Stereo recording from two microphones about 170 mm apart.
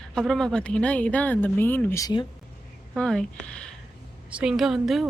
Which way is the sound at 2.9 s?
5° left (ahead or behind).